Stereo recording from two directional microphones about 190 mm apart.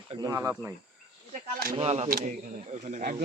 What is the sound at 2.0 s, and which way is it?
Speech, 50° right (ahead or behind).